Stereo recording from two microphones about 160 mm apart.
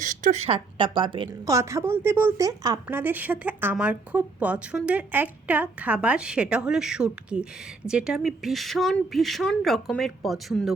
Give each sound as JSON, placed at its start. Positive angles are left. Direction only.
{"t": 0.0, "sound": "a woman's voice", "side_deg": -50}
{"t": 1.5, "sound": "a woman's voice", "side_deg": -15}